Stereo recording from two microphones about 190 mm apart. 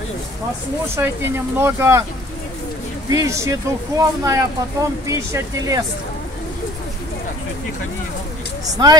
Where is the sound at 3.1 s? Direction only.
15° right (ahead or behind).